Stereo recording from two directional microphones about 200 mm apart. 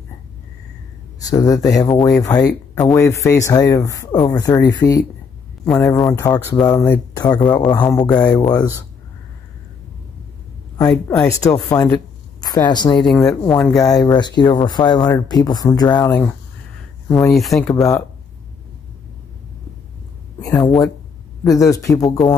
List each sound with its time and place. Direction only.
1.2 s speech: 20° left (ahead or behind)
7.8 s speech: 5° left (ahead or behind)
8.3 s speech: 20° left (ahead or behind)
11.1 s speech: 20° left (ahead or behind)
13.0 s speech: centre (ahead or behind)
13.7 s speech: 20° left (ahead or behind); by 17.6 s centre (ahead or behind)
20.4 s speech: 20° left (ahead or behind)